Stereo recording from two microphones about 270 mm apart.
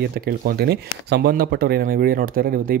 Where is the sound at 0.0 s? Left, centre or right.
Right.